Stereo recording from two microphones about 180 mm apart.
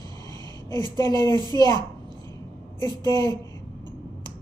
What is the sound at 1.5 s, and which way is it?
Speech, 20° left (ahead or behind).